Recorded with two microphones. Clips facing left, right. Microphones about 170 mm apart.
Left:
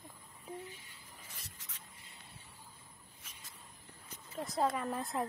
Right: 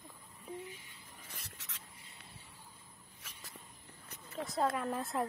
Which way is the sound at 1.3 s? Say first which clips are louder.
Right 2 dB; 70° right (ahead or behind).